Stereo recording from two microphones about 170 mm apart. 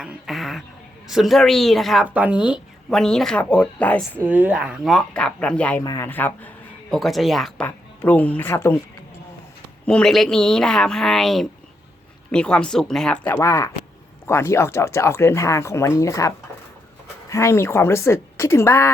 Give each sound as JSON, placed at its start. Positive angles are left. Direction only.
{"t": 0.0, "sound": "a woman's voice", "side_deg": 0}
{"t": 4.1, "sound": "a woman's voice", "side_deg": -10}
{"t": 5.8, "sound": "speech", "side_deg": 25}
{"t": 6.1, "sound": "speech", "side_deg": 10}
{"t": 6.9, "sound": "speech", "side_deg": 0}
{"t": 9.8, "sound": "a woman's voice", "side_deg": 5}
{"t": 13.3, "sound": "speech", "side_deg": 15}